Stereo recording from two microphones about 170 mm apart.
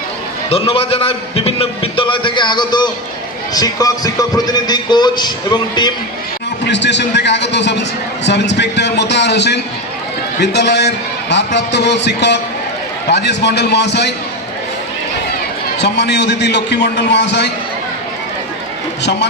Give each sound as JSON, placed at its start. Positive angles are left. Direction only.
{"t": 0.5, "sound": "a man's voice", "side_deg": 35}
{"t": 6.7, "sound": "a man's voice", "side_deg": 90}
{"t": 15.8, "sound": "a man's voice", "side_deg": 85}